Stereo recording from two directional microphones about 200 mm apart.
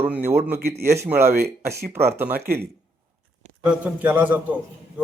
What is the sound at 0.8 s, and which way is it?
A man's voice, 10° right (ahead or behind).